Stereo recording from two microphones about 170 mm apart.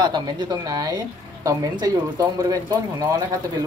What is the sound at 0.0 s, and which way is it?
Speech, 25° right (ahead or behind).